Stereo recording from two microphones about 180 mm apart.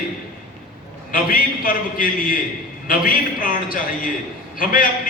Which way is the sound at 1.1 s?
50° left (ahead or behind).